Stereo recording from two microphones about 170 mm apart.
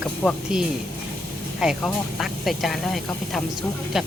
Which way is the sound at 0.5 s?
5° right (ahead or behind).